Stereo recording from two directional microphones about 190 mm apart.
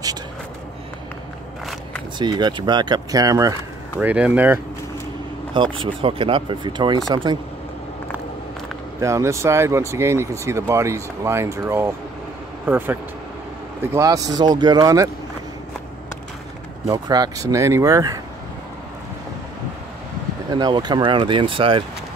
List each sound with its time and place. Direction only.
2.1 s speech: 25° right (ahead or behind)
4.0 s speech: 10° right (ahead or behind)
5.5 s speech: 25° right (ahead or behind)
9.0 s speech: 15° right (ahead or behind)
13.9 s speech: 20° right (ahead or behind)
16.9 s speech: 20° right (ahead or behind)
20.4 s speech: 20° right (ahead or behind)